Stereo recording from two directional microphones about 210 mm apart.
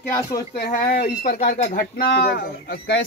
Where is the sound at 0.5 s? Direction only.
45° left (ahead or behind).